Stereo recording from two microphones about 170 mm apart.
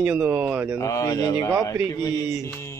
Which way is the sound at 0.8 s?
20° left (ahead or behind).